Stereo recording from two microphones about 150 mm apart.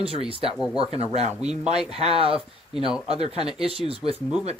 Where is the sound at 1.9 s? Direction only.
40° right (ahead or behind).